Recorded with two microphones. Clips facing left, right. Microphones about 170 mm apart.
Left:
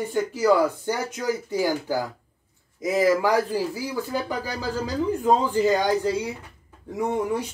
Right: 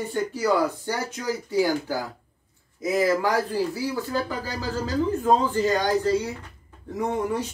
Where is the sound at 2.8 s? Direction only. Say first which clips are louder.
Left 2 dB; 15° left (ahead or behind).